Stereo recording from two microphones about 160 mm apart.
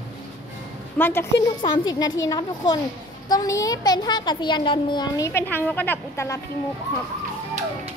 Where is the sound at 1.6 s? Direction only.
30° left (ahead or behind).